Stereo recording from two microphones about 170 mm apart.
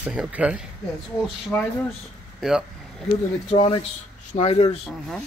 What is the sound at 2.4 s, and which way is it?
Speech, 5° right (ahead or behind).